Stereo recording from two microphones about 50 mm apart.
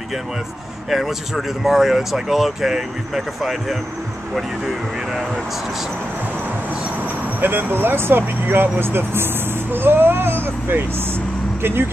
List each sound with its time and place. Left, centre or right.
0.8 s speech: centre
7.3 s speech: right